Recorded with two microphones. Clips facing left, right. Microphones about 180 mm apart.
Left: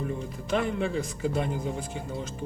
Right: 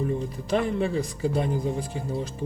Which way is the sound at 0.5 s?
35° right (ahead or behind).